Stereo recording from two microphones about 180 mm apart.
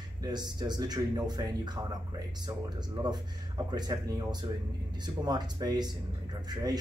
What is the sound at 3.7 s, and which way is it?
Speech, 20° right (ahead or behind).